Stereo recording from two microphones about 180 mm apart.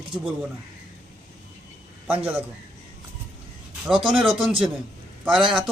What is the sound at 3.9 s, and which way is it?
Speech, 30° right (ahead or behind).